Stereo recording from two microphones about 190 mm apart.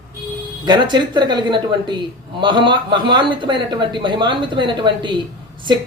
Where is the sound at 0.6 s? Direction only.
25° right (ahead or behind).